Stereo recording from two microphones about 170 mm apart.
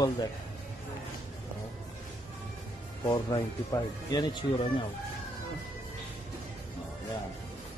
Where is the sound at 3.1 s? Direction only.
25° left (ahead or behind).